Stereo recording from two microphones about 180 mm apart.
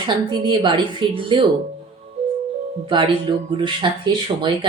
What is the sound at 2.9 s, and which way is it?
Speech, 25° right (ahead or behind).